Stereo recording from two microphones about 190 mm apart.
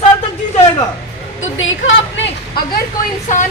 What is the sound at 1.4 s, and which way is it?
Speech, 90° left.